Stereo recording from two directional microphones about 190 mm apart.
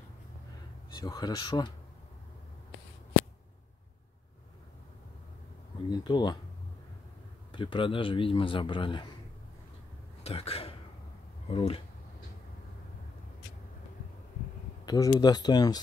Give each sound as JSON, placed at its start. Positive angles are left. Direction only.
{"t": 0.9, "sound": "a man's voice", "side_deg": 20}
{"t": 5.9, "sound": "a man's voice", "side_deg": 25}
{"t": 7.5, "sound": "a man's voice", "side_deg": 25}
{"t": 10.2, "sound": "speech", "side_deg": 30}
{"t": 14.9, "sound": "a man's voice", "side_deg": 20}